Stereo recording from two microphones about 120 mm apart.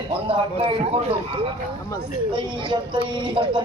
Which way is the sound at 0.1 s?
50° right (ahead or behind).